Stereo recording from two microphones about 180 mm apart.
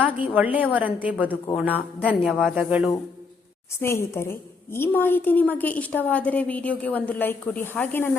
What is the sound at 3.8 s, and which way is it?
A woman's voice, 15° left (ahead or behind).